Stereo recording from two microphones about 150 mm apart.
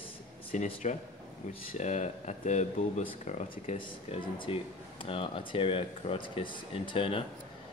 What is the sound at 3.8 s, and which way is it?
Speech, 35° left (ahead or behind).